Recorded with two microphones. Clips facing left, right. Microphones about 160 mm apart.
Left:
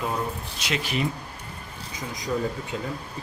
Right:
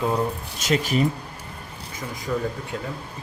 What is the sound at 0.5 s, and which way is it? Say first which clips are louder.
Speech: right 7 dB; 45° right (ahead or behind).